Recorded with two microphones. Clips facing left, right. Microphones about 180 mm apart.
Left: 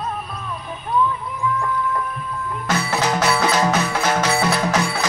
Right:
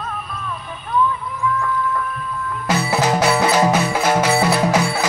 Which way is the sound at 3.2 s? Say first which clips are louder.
Right 2 dB; 10° right (ahead or behind).